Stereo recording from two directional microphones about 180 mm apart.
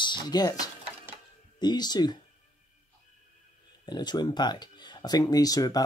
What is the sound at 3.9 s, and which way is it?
Speech, 25° left (ahead or behind).